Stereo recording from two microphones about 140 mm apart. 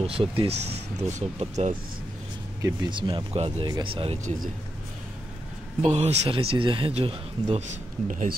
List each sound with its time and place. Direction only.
0.0 s speech: 40° right (ahead or behind)
2.9 s speech: 35° right (ahead or behind)
4.2 s speech: 60° right (ahead or behind)
5.9 s speech: 50° right (ahead or behind); by 8.4 s 65° right (ahead or behind)